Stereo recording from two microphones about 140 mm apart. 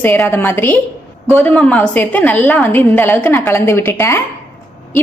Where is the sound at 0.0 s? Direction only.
15° left (ahead or behind).